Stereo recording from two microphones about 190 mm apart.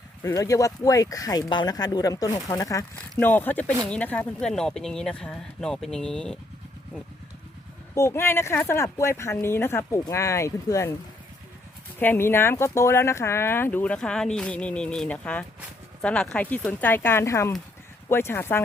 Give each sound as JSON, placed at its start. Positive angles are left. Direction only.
{"t": 0.2, "sound": "speech", "side_deg": 15}
{"t": 7.9, "sound": "speech", "side_deg": 15}
{"t": 11.9, "sound": "speech", "side_deg": 10}